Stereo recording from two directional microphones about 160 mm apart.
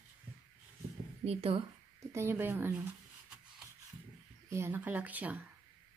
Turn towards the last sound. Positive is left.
turn(degrees=-10)  # may be behind; listen again after turning